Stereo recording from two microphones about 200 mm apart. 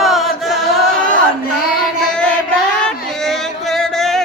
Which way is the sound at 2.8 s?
Centre (ahead or behind).